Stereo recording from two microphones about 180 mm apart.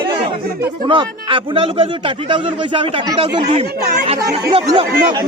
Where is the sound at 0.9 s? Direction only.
30° right (ahead or behind).